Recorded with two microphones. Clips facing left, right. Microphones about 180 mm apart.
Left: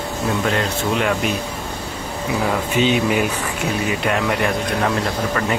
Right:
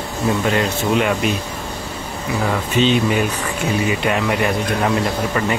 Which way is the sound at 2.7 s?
10° left (ahead or behind).